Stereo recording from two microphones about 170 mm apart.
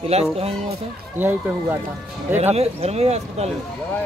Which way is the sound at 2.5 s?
40° right (ahead or behind).